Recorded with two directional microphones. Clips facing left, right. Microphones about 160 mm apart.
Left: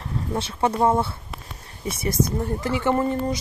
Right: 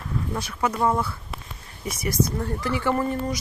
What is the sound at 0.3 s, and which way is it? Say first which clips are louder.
Speech: left 4 dB; 30° left (ahead or behind).